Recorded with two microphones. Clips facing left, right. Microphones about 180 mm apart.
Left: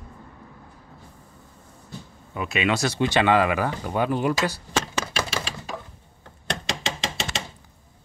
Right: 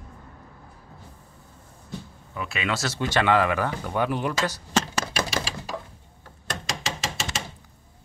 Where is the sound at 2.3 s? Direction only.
20° left (ahead or behind).